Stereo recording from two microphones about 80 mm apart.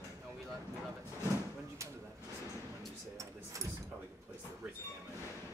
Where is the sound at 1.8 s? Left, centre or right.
Right.